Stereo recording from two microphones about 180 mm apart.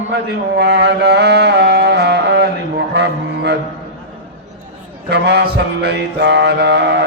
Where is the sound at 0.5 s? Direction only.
65° right (ahead or behind).